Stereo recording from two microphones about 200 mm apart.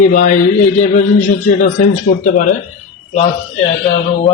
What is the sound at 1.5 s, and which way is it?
Speech, 40° left (ahead or behind).